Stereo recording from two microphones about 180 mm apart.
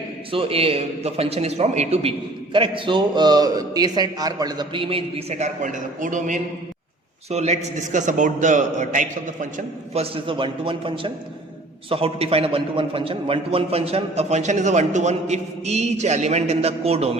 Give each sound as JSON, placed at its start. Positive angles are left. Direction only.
{"t": 0.3, "sound": "a man's voice", "side_deg": -30}